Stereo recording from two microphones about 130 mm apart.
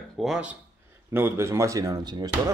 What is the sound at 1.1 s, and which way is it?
Speech, 20° right (ahead or behind).